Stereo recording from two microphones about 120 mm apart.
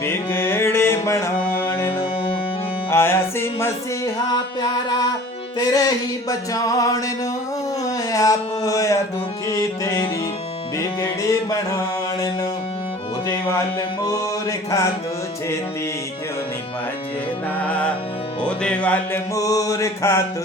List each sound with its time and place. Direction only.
0.0 s music: 20° left (ahead or behind)
5.5 s music: 30° left (ahead or behind)
8.1 s a sound: 30° left (ahead or behind)
9.5 s music: 25° left (ahead or behind)
13.2 s music: 25° left (ahead or behind)
17.6 s music: 10° left (ahead or behind)
19.3 s music: 30° left (ahead or behind)